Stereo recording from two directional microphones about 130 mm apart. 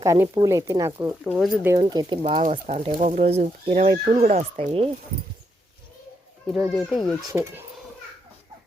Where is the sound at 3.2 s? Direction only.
50° right (ahead or behind); by 4.7 s 70° right (ahead or behind).